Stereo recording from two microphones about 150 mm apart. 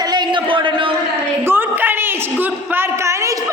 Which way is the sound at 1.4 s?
15° right (ahead or behind).